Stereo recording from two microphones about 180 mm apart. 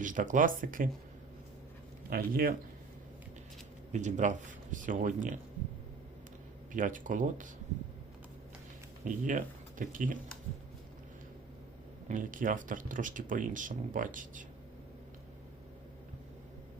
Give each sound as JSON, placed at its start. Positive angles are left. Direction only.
{"t": 0.0, "sound": "speech", "side_deg": -45}
{"t": 2.0, "sound": "speech", "side_deg": -55}
{"t": 3.9, "sound": "speech", "side_deg": -45}
{"t": 6.7, "sound": "speech", "side_deg": -45}
{"t": 9.0, "sound": "speech", "side_deg": -45}
{"t": 12.0, "sound": "speech", "side_deg": -45}